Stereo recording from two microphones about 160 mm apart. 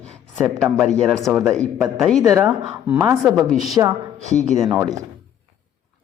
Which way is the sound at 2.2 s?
20° right (ahead or behind).